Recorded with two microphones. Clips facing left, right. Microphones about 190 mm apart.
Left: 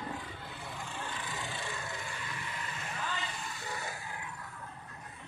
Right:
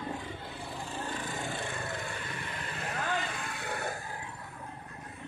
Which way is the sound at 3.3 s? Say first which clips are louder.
Right 4 dB; 65° right (ahead or behind).